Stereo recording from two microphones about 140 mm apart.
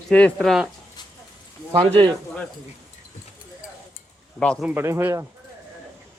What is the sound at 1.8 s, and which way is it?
Speech, 40° right (ahead or behind).